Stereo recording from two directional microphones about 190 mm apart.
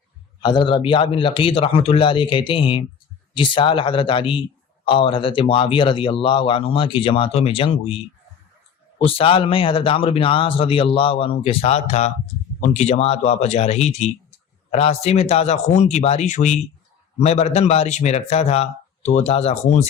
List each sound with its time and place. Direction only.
0.4 s speech: 25° left (ahead or behind)
9.0 s speech: 30° left (ahead or behind)